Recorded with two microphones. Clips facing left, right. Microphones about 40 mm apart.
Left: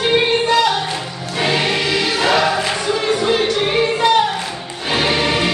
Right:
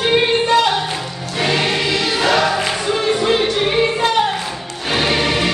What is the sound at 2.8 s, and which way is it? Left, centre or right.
Music, right.